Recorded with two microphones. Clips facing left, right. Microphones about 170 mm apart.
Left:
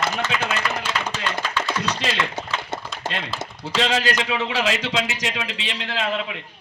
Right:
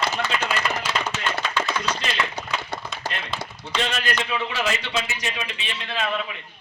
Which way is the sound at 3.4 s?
20° left (ahead or behind).